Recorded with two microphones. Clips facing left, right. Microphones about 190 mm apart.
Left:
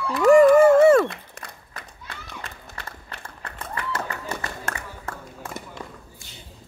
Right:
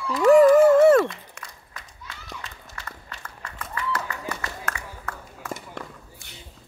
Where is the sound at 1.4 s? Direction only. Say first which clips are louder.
Left 3 dB; 60° left (ahead or behind).